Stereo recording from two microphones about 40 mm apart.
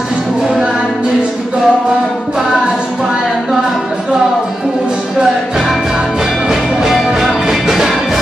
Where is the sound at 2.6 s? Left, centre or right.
Right.